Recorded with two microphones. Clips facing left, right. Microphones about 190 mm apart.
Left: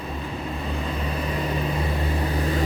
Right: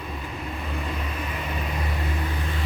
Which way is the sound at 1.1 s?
35° left (ahead or behind).